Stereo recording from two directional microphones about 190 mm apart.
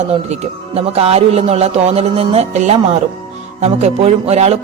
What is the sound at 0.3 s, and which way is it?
Speech, 30° right (ahead or behind).